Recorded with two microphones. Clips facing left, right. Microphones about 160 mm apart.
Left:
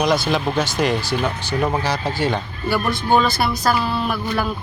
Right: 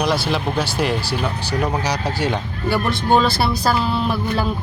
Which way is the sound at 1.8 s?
15° right (ahead or behind).